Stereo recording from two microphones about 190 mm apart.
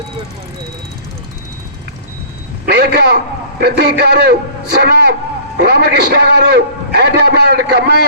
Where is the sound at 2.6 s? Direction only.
60° right (ahead or behind).